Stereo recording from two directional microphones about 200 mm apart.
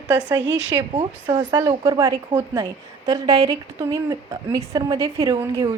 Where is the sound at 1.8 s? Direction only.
15° right (ahead or behind).